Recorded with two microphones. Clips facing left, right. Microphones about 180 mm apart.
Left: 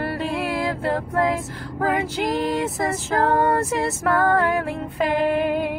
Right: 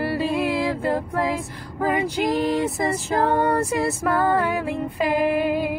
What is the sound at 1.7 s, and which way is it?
Female singing, 10° right (ahead or behind).